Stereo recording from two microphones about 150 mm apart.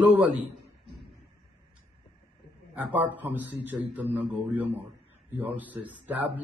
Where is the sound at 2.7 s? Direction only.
10° right (ahead or behind).